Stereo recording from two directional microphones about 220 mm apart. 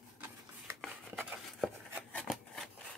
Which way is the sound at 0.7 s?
Centre (ahead or behind).